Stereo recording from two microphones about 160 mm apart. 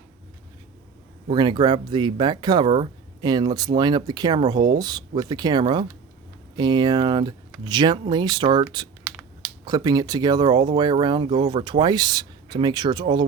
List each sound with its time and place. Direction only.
1.3 s speech: 30° right (ahead or behind)
9.0 s a sound: 5° right (ahead or behind)
9.6 s speech: 25° right (ahead or behind)